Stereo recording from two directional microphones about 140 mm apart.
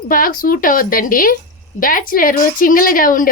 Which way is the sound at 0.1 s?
90° left.